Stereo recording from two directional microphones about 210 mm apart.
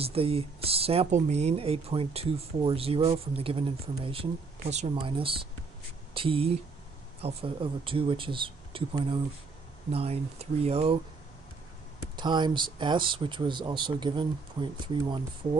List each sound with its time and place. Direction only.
0.0 s speech: 25° right (ahead or behind)
12.2 s speech: 20° right (ahead or behind)